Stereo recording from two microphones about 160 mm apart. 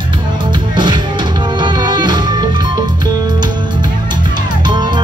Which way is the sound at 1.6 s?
30° right (ahead or behind).